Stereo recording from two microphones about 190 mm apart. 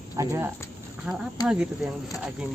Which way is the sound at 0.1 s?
15° right (ahead or behind).